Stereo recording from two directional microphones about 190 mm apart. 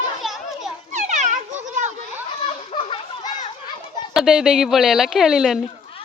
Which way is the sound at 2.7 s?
30° left (ahead or behind).